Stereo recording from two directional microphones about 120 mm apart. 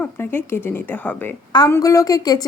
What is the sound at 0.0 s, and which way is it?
A woman's voice, 15° left (ahead or behind).